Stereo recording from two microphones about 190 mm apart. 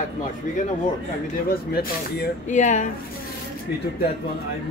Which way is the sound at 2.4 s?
40° left (ahead or behind).